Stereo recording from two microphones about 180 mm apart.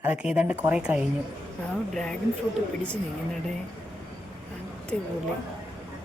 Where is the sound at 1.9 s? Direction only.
5° left (ahead or behind).